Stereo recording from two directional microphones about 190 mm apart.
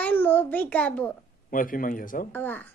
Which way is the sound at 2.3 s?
10° left (ahead or behind).